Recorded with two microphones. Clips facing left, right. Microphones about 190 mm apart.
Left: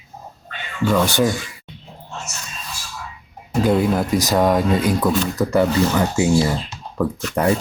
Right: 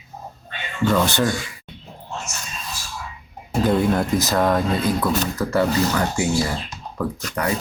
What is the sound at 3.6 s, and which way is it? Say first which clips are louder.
Speech: left 1 dB; 5° left (ahead or behind).